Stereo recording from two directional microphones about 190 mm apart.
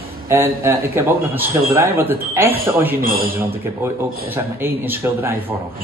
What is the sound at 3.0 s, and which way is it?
Speech, 50° right (ahead or behind).